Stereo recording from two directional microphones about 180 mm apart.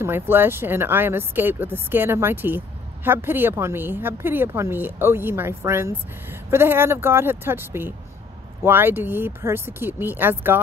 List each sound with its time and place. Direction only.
0.0 s speech: 10° right (ahead or behind)